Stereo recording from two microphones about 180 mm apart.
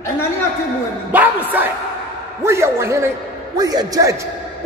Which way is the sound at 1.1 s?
10° right (ahead or behind).